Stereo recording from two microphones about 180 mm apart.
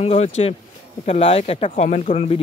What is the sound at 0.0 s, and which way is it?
Speech, 35° left (ahead or behind).